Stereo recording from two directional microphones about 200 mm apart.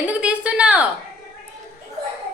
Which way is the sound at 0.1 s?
5° right (ahead or behind).